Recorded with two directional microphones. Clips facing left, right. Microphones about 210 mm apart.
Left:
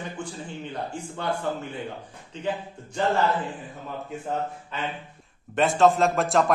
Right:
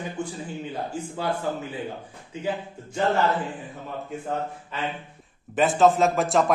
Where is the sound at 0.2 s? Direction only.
10° right (ahead or behind).